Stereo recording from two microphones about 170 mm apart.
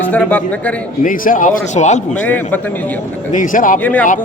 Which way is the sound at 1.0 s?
55° left (ahead or behind).